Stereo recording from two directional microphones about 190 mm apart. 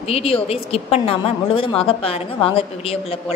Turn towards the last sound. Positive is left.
turn(degrees=30)  # may be behind; listen again after turning